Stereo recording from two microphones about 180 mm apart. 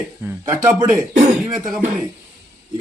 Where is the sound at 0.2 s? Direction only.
15° right (ahead or behind).